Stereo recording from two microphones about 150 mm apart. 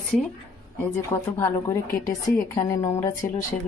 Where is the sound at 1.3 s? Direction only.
15° left (ahead or behind).